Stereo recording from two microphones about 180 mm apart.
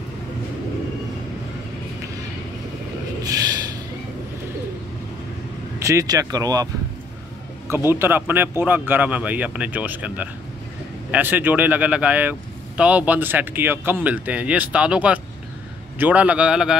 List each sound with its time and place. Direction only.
5.8 s speech: 15° right (ahead or behind)
7.7 s speech: 15° right (ahead or behind)